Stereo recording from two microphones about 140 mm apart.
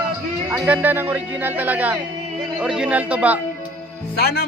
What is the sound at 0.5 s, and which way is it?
A man's voice, 10° right (ahead or behind).